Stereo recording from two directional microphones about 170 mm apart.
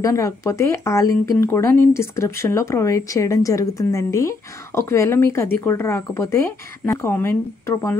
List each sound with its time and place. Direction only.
0.0 s speech: 20° left (ahead or behind)